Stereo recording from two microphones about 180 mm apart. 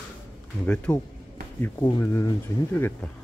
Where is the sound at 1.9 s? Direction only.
20° left (ahead or behind).